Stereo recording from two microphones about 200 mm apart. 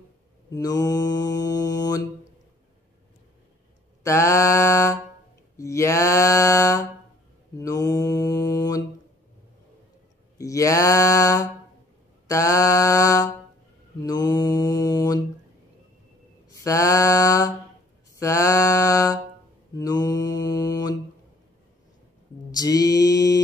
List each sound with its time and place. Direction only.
0.6 s mantra: 20° left (ahead or behind)
4.0 s mantra: 15° left (ahead or behind)
10.3 s speech: 15° left (ahead or behind)
12.3 s mantra: 15° left (ahead or behind)
16.5 s mantra: 15° left (ahead or behind)
22.5 s mantra: 20° left (ahead or behind)